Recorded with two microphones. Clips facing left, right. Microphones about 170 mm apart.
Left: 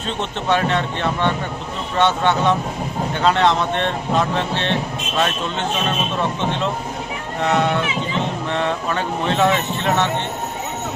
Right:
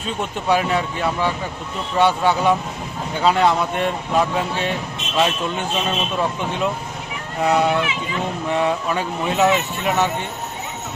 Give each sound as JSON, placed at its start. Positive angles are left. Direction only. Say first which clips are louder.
{"t": 0.2, "sound": "speech", "louder": "even", "side_deg": -10}
{"t": 7.4, "sound": "speech", "louder": "right 1 dB", "side_deg": -10}